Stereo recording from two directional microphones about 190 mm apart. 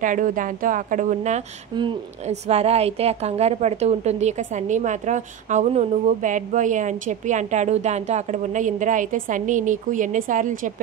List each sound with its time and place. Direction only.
0.0 s speech: 45° right (ahead or behind)
1.7 s a woman's voice: 25° right (ahead or behind); by 10.7 s 45° right (ahead or behind)